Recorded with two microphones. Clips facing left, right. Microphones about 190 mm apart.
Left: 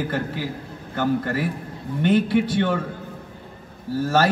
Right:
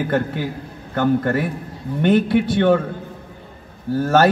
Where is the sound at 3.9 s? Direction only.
55° right (ahead or behind).